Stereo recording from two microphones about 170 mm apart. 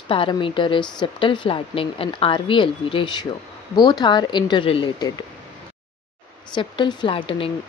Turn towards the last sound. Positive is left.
turn(degrees=30)  # may be behind; listen again after turning